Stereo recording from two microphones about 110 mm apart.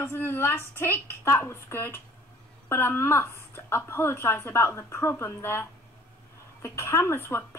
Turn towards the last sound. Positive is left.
turn(degrees=20)  # may be behind; listen again after turning